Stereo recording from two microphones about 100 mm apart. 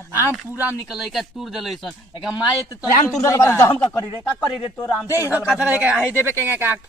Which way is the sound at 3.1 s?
30° left (ahead or behind).